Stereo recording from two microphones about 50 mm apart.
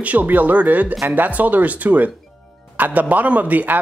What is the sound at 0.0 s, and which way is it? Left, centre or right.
Speech, right.